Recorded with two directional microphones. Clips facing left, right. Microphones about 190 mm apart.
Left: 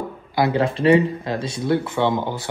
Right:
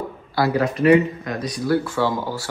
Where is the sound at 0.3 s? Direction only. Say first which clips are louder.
Left 1 dB; 25° left (ahead or behind).